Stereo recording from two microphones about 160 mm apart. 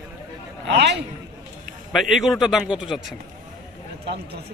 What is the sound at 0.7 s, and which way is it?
Speech, 90° right.